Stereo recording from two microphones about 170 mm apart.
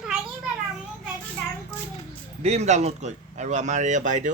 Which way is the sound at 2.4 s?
40° right (ahead or behind).